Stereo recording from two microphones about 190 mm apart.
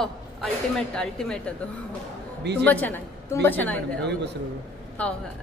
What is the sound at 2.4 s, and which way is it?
Speech, 65° right (ahead or behind).